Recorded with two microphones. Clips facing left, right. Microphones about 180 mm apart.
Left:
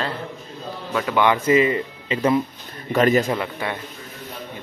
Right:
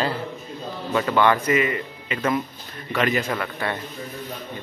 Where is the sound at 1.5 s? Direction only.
30° left (ahead or behind).